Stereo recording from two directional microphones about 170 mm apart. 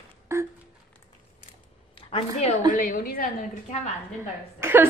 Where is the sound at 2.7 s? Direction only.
50° left (ahead or behind).